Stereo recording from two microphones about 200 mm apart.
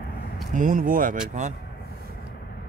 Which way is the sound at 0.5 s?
40° right (ahead or behind).